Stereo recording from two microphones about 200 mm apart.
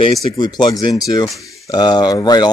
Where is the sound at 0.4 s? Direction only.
20° left (ahead or behind).